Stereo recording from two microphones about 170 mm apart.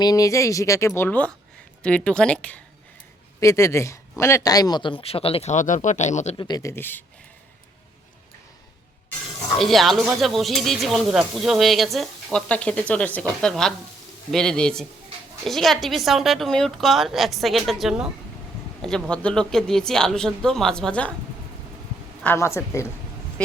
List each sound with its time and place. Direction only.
0.0 s speech: 20° left (ahead or behind)
3.4 s speech: 15° left (ahead or behind); by 6.3 s 45° left (ahead or behind)
6.3 s speech: 25° left (ahead or behind)
9.6 s speech: centre (ahead or behind)
22.2 s speech: 15° left (ahead or behind)